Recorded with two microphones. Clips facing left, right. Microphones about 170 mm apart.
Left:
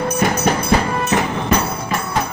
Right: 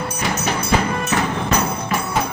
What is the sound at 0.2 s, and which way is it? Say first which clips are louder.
Music: left 5 dB; 50° left (ahead or behind).